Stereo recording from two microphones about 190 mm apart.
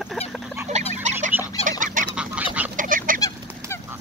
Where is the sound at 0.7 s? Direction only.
35° right (ahead or behind).